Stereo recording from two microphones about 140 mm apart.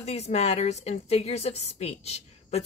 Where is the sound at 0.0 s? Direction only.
50° left (ahead or behind).